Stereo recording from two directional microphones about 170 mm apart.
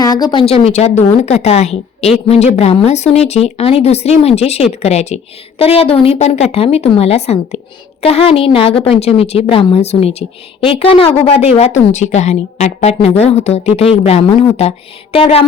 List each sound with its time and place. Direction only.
0.0 s a woman's voice: 25° left (ahead or behind)